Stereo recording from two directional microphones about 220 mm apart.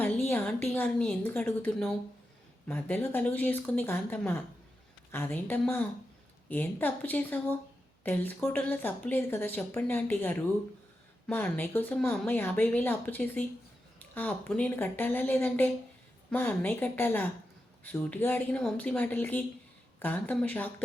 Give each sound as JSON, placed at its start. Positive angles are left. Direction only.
{"t": 0.0, "sound": "speech", "side_deg": 10}